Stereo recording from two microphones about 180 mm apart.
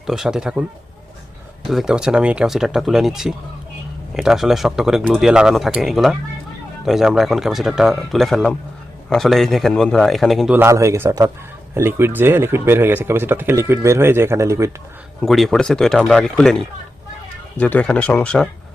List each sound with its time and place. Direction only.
0.0 s a man's voice: centre (ahead or behind)
1.7 s a man's voice: 5° right (ahead or behind)
15.2 s a man's voice: centre (ahead or behind)